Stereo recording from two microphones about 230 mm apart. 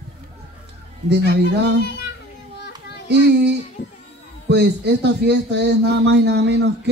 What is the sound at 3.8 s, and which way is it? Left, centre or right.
Speech, left.